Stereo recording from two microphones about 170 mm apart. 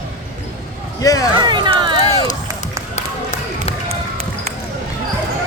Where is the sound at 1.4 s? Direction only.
25° right (ahead or behind).